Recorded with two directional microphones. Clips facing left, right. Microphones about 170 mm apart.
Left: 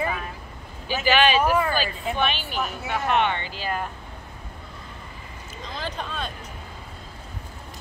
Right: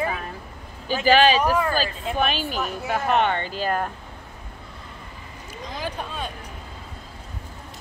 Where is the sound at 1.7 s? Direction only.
40° right (ahead or behind).